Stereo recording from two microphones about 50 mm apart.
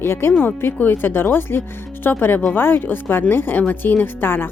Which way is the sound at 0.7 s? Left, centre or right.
Left.